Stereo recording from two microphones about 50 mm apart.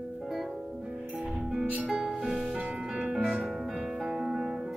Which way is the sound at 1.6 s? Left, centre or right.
Right.